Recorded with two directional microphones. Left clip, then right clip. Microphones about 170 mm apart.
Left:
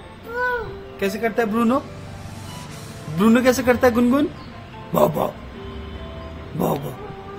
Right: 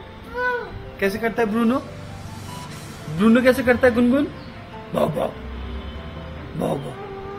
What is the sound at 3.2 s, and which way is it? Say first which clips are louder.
Speech: even; 55° left (ahead or behind).